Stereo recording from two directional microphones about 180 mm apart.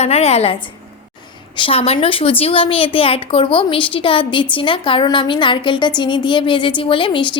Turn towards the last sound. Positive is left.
turn(degrees=25)  # may be behind; listen again after turning